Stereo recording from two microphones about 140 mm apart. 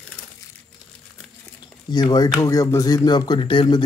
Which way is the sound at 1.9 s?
30° left (ahead or behind).